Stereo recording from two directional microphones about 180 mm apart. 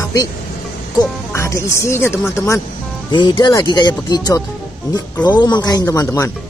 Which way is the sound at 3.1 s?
25° left (ahead or behind).